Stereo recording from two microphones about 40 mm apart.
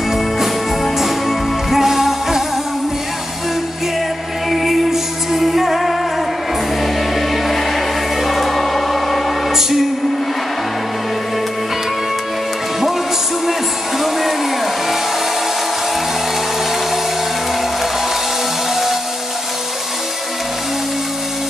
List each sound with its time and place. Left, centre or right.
0.1 s music: centre
4.5 s music: centre
13.5 s music: centre